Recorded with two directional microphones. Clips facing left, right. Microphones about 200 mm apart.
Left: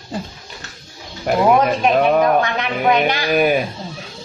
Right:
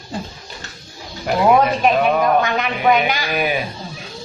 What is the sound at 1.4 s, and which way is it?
A woman's voice, centre (ahead or behind).